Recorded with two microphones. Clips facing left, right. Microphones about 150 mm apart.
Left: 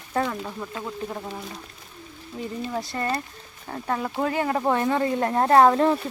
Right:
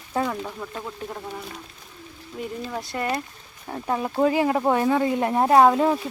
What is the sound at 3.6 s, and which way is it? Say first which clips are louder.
Speech: right 1 dB; 10° right (ahead or behind).